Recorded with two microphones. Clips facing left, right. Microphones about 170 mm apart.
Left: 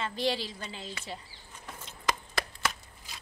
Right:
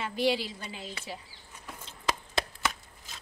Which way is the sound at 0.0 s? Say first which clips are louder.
Right 3 dB; 10° right (ahead or behind).